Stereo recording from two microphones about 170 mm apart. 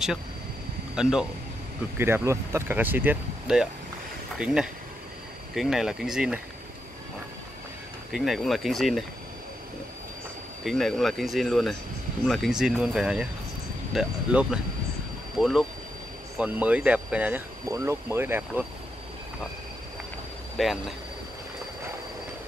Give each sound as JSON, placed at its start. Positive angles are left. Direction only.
{"t": 1.0, "sound": "speech", "side_deg": -5}
{"t": 2.0, "sound": "speech", "side_deg": -15}
{"t": 8.1, "sound": "speech", "side_deg": 0}
{"t": 10.6, "sound": "speech", "side_deg": 0}
{"t": 20.5, "sound": "speech", "side_deg": 0}